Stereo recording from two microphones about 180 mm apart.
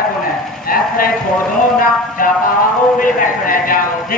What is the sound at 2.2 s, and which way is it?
A man's voice, 50° left (ahead or behind).